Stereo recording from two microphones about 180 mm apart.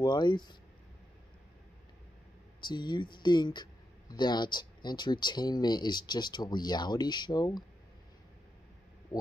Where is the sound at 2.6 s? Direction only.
25° left (ahead or behind).